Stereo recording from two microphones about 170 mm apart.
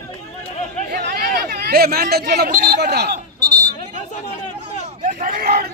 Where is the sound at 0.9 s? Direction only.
70° right (ahead or behind).